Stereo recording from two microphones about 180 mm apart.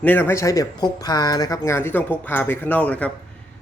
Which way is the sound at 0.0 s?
10° left (ahead or behind).